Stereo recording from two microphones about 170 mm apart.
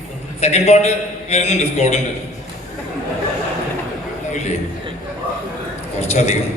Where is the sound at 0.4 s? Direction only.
40° left (ahead or behind).